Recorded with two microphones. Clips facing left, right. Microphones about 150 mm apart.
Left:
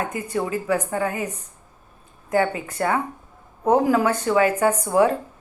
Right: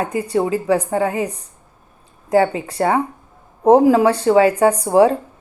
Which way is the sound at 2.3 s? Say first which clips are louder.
Right 6 dB; 30° right (ahead or behind).